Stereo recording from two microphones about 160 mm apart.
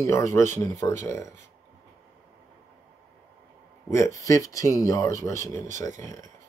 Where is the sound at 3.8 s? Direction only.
20° left (ahead or behind).